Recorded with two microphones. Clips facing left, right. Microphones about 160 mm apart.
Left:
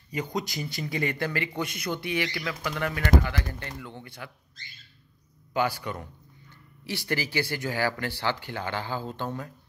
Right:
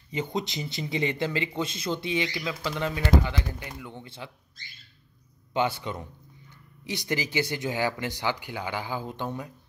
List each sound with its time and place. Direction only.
0.1 s speech: 25° right (ahead or behind)
5.5 s speech: 25° right (ahead or behind)